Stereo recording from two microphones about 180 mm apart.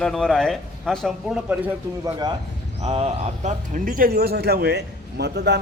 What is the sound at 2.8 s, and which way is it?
Speech, 35° right (ahead or behind).